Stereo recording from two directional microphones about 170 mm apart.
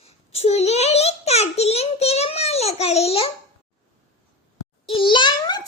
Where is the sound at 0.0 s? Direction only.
35° left (ahead or behind).